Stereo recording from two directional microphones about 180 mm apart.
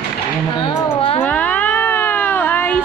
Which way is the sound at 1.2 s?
10° left (ahead or behind).